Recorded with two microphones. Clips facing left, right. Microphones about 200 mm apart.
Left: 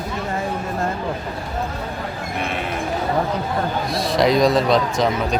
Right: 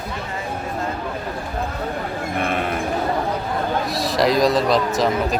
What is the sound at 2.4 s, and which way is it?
Sheep, 55° right (ahead or behind).